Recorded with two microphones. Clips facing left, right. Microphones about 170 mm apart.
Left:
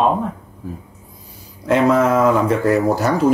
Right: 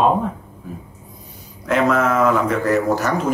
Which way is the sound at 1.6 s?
30° left (ahead or behind).